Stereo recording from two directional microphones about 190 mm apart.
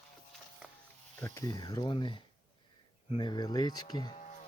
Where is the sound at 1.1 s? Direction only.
10° left (ahead or behind).